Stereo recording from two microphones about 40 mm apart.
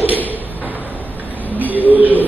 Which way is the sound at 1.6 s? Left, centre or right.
Right.